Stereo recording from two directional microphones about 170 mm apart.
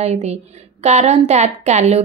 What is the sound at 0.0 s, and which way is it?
A woman's voice, 40° right (ahead or behind).